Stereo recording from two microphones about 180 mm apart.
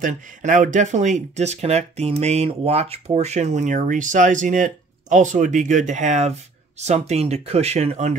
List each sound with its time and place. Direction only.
0.0 s speech: 45° right (ahead or behind)